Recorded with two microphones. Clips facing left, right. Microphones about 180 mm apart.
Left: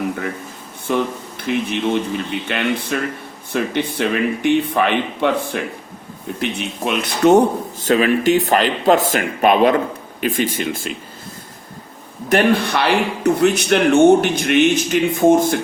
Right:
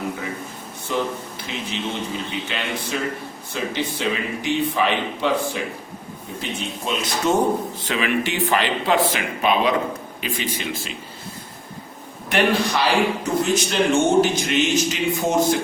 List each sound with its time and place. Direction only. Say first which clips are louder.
0.9 s speech: left 4 dB; 60° left (ahead or behind)
7.8 s speech: left 7 dB; 45° left (ahead or behind)
12.3 s speech: left 4 dB; 55° left (ahead or behind)